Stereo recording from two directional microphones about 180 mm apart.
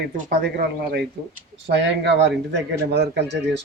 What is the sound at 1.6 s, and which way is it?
Speech, 75° right (ahead or behind).